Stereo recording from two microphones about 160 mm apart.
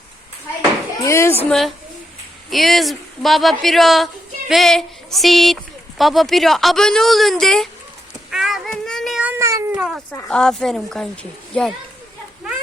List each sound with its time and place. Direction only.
1.0 s a woman's voice: 15° left (ahead or behind)
1.5 s speech: centre (ahead or behind)
8.3 s child singing: 5° right (ahead or behind)
9.3 s cat: 20° right (ahead or behind)
10.1 s speech: 10° left (ahead or behind)